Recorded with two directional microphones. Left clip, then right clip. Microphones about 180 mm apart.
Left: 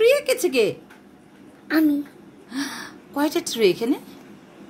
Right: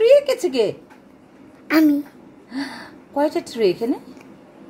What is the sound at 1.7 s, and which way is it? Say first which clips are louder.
Speech: right 4 dB; 55° right (ahead or behind).